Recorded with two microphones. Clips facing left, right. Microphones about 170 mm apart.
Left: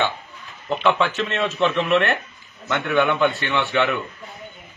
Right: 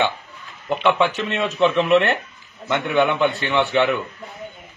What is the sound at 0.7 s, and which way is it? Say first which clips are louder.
A man's voice: right 1 dB; 15° right (ahead or behind).